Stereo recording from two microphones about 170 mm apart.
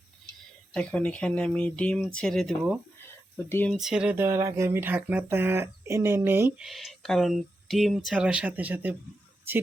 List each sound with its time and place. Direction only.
0.7 s speech: 5° left (ahead or behind)
3.3 s speech: 15° left (ahead or behind)
3.7 s speech: centre (ahead or behind)
6.7 s speech: centre (ahead or behind)